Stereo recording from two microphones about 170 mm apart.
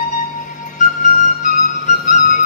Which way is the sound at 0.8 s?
45° left (ahead or behind).